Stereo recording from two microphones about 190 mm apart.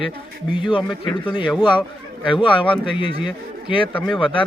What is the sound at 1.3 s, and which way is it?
A man's voice, 25° left (ahead or behind).